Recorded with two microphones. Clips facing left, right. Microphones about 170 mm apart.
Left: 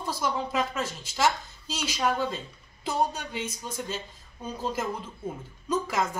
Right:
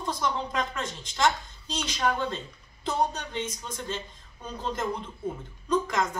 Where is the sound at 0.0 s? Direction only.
5° left (ahead or behind).